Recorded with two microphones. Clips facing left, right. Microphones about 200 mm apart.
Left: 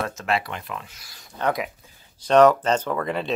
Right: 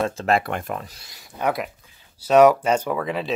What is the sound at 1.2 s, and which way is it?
Speech, 10° right (ahead or behind).